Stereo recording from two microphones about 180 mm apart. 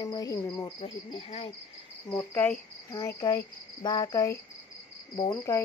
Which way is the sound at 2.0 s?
10° left (ahead or behind).